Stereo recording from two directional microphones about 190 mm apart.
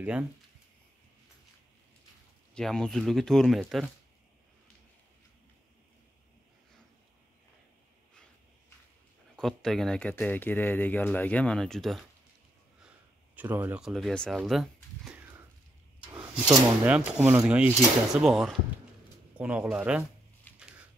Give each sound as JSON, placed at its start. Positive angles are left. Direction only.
{"t": 0.0, "sound": "speech", "side_deg": -5}
{"t": 2.5, "sound": "speech", "side_deg": 5}
{"t": 9.4, "sound": "speech", "side_deg": 5}
{"t": 13.4, "sound": "speech", "side_deg": -10}
{"t": 16.0, "sound": "rub", "side_deg": -5}
{"t": 16.8, "sound": "speech", "side_deg": -10}
{"t": 20.5, "sound": "a sound", "side_deg": 10}